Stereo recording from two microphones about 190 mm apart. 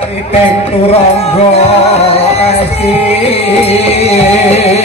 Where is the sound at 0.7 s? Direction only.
30° left (ahead or behind).